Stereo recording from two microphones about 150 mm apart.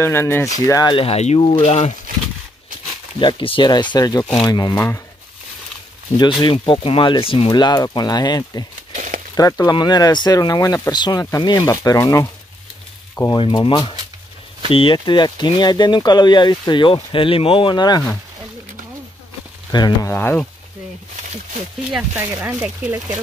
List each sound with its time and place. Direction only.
0.0 s speech: 15° left (ahead or behind)
0.9 s speech: 40° left (ahead or behind)
3.2 s speech: 30° left (ahead or behind); by 5.0 s 15° left (ahead or behind)
6.4 s speech: 35° left (ahead or behind); by 13.4 s 15° left (ahead or behind)
13.4 s speech: 35° left (ahead or behind)
19.7 s speech: 30° left (ahead or behind)
20.1 s speech: 15° left (ahead or behind)
21.9 s speech: 10° right (ahead or behind)